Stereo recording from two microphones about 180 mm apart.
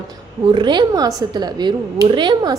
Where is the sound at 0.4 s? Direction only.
25° right (ahead or behind).